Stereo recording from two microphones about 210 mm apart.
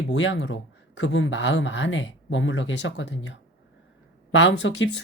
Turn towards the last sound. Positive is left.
turn(degrees=60)  # may be behind; listen again after turning